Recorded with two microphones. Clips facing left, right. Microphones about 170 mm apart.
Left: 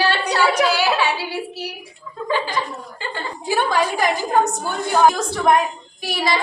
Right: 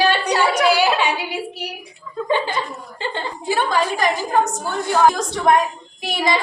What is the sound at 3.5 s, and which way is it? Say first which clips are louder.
Speech: left 1 dB; 10° left (ahead or behind).